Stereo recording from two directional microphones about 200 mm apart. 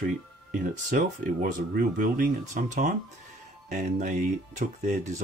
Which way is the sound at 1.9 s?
45° right (ahead or behind).